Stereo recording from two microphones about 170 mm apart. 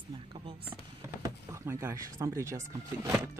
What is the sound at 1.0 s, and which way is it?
Speech, 15° right (ahead or behind).